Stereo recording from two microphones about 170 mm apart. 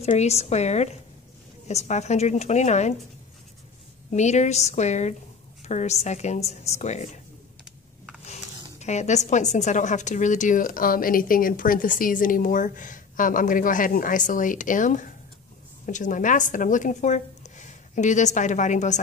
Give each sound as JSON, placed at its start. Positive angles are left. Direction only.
{"t": 0.0, "sound": "a woman's voice", "side_deg": 40}
{"t": 4.1, "sound": "a woman's voice", "side_deg": 45}
{"t": 8.7, "sound": "a woman's voice", "side_deg": 40}